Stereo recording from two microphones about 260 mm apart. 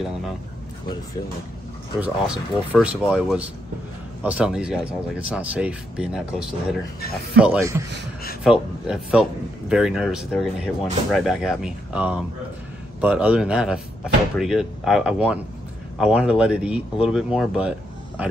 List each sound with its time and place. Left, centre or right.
2.0 s speech: centre
7.3 s speech: centre